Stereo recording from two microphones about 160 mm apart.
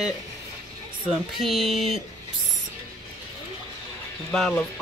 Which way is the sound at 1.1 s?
Centre (ahead or behind).